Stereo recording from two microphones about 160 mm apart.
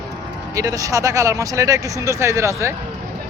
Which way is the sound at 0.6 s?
20° right (ahead or behind).